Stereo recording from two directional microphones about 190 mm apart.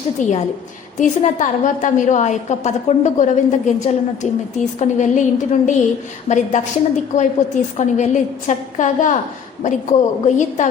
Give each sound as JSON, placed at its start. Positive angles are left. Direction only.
{"t": 0.2, "sound": "a woman's voice", "side_deg": 40}